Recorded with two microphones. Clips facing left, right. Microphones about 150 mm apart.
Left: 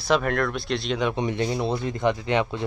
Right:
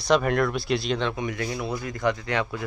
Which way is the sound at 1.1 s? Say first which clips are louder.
Left 4 dB; 30° left (ahead or behind).